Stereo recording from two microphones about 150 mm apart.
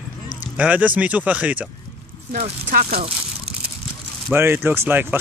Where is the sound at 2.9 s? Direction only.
40° right (ahead or behind).